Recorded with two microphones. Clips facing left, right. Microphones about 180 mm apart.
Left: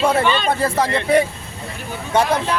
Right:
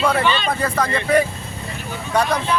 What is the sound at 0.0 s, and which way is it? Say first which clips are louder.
Speech: left 2 dB; 45° left (ahead or behind).